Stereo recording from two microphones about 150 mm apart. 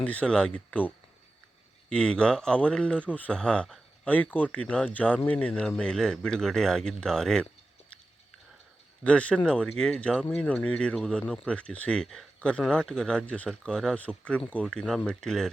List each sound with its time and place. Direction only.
0.0 s speech: 10° left (ahead or behind)
9.0 s speech: 10° left (ahead or behind)